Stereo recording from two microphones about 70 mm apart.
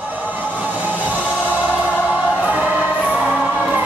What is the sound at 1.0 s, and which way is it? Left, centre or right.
Music, right.